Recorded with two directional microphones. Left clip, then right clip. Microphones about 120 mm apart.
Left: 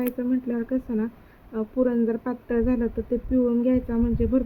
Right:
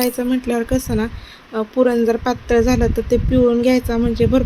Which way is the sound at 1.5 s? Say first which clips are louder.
Right 8 dB; 30° right (ahead or behind).